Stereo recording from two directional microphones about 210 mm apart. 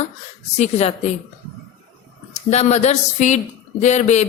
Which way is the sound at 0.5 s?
30° left (ahead or behind).